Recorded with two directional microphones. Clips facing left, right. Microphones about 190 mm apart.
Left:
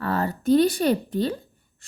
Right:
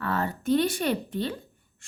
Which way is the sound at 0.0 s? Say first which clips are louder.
Left 4 dB; 35° left (ahead or behind).